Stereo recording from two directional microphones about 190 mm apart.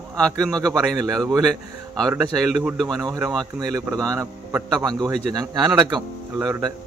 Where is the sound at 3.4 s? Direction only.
20° right (ahead or behind).